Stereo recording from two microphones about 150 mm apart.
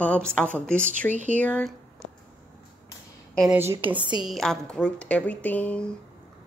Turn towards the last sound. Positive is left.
turn(degrees=10)  # may be behind; listen again after turning